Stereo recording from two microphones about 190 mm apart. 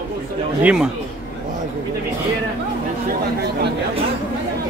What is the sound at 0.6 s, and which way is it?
Speech, 5° right (ahead or behind).